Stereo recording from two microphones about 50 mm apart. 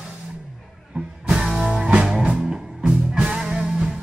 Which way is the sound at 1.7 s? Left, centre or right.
Right.